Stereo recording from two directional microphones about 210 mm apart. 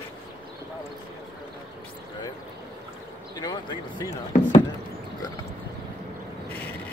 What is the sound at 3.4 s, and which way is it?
Speech, 20° left (ahead or behind).